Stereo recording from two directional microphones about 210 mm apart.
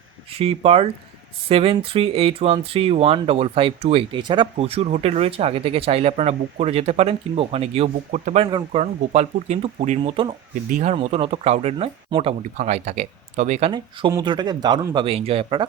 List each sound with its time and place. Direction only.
0.3 s speech: 30° right (ahead or behind)